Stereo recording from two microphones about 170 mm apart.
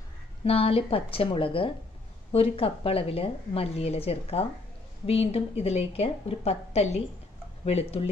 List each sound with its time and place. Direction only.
0.5 s a woman's voice: 35° left (ahead or behind)